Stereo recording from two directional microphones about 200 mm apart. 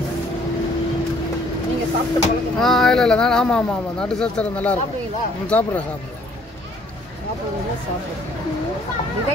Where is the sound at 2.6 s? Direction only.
Centre (ahead or behind).